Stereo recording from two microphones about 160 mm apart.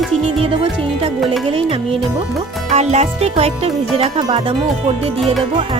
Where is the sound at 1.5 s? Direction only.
35° right (ahead or behind).